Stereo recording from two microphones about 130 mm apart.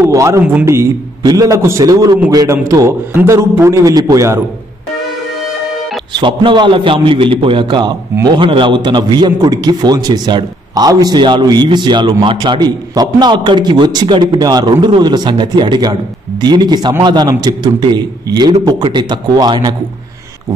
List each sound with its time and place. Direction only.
0.0 s a man's voice: 25° right (ahead or behind)
6.1 s a man's voice: 35° right (ahead or behind)